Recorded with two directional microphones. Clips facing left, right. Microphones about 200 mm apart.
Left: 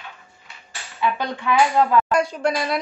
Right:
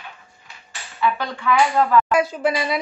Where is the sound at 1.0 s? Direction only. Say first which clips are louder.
Right 1 dB; 20° left (ahead or behind).